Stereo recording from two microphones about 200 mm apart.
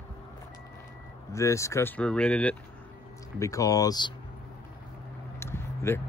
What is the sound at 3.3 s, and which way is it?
Speech, 15° left (ahead or behind).